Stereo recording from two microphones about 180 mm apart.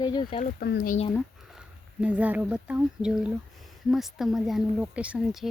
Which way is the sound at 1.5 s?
5° right (ahead or behind).